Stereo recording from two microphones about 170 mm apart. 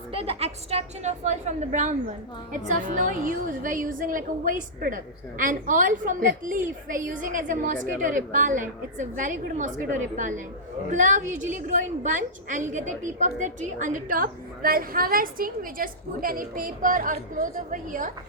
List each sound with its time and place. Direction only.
0.1 s a woman's voice: 35° right (ahead or behind); by 18.1 s 50° right (ahead or behind)